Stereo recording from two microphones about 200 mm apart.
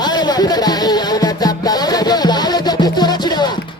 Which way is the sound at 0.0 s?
20° left (ahead or behind).